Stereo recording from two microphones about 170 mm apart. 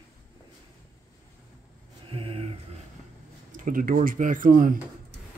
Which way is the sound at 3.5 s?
50° right (ahead or behind).